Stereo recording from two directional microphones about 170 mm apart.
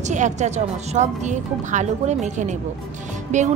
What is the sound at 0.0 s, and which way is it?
Speech, 45° right (ahead or behind).